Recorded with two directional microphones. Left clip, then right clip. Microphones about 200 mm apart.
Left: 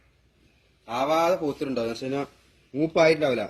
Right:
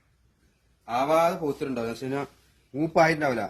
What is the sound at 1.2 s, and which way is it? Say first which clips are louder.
A man's voice: left 1 dB; 30° right (ahead or behind).